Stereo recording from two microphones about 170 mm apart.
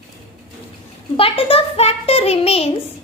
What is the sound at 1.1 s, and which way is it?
A child's voice, 35° left (ahead or behind).